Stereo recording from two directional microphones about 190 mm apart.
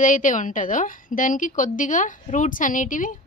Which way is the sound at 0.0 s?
45° left (ahead or behind).